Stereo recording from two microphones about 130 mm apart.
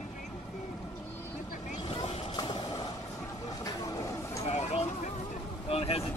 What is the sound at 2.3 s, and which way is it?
Train, 35° left (ahead or behind).